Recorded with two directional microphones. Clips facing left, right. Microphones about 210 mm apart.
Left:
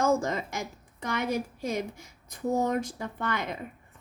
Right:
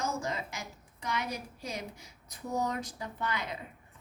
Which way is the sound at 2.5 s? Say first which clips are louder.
Left 5 dB; 50° left (ahead or behind).